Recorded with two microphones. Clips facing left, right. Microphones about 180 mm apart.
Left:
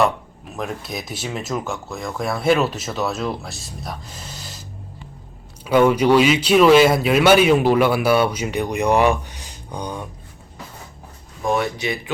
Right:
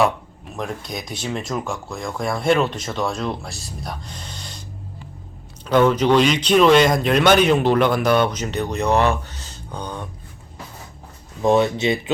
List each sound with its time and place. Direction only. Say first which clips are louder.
0.0 s speech: even; centre (ahead or behind)
5.6 s speech: left 1 dB; 10° left (ahead or behind)
11.4 s speech: right 5 dB; 25° right (ahead or behind)